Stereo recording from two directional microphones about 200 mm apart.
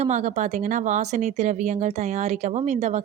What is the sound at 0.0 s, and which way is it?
Speech, 35° right (ahead or behind).